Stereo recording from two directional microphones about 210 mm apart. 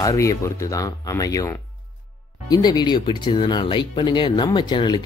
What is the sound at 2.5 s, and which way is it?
Speech, 20° left (ahead or behind).